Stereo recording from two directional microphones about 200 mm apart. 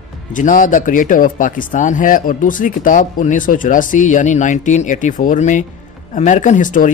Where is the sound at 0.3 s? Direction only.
40° left (ahead or behind).